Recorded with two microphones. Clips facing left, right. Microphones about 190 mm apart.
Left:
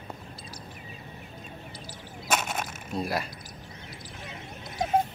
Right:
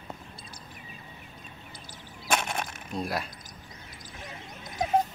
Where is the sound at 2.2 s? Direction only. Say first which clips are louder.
Even; 5° left (ahead or behind).